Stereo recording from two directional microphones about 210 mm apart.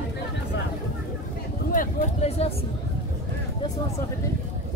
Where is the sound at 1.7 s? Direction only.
35° left (ahead or behind).